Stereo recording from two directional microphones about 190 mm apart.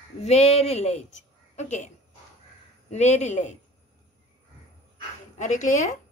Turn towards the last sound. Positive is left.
turn(degrees=40)  # may be behind; listen again after turning